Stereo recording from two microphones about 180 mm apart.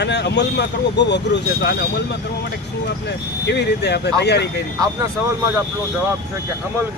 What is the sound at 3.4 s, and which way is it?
Speech, 70° left (ahead or behind).